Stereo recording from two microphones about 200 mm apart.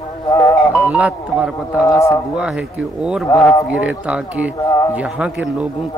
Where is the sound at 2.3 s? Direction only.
5° right (ahead or behind).